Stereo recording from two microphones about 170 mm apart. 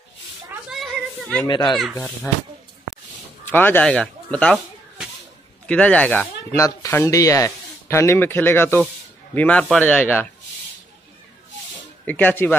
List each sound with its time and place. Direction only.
0.7 s a sound: centre (ahead or behind)
1.5 s speech: 25° left (ahead or behind)
3.4 s speech: 10° left (ahead or behind)
5.7 s speech: 5° left (ahead or behind)
12.1 s speech: 10° left (ahead or behind)